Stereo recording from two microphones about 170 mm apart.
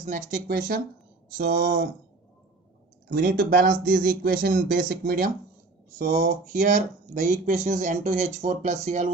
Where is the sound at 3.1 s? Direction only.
65° right (ahead or behind).